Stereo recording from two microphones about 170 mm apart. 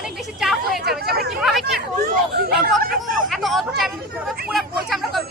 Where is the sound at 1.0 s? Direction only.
70° right (ahead or behind).